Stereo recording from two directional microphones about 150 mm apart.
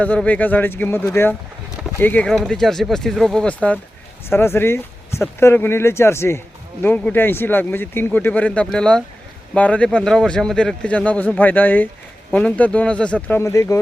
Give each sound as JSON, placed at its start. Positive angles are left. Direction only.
{"t": 0.0, "sound": "a man's voice", "side_deg": 10}
{"t": 13.4, "sound": "speech", "side_deg": 20}